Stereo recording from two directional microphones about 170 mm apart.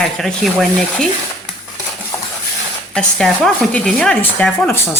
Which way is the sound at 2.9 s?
5° left (ahead or behind).